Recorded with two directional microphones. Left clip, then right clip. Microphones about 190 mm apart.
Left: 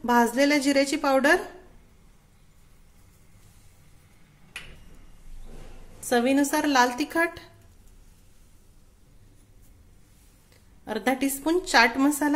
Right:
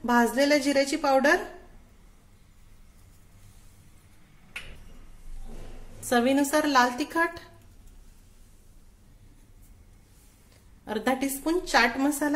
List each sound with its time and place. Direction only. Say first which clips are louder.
0.0 s a woman's voice: left 2 dB; 15° left (ahead or behind)
6.0 s a woman's voice: left 1 dB; 10° left (ahead or behind)
10.9 s a woman's voice: left 1 dB; 15° left (ahead or behind)